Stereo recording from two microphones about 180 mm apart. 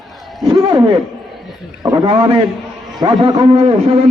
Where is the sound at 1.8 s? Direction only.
25° right (ahead or behind).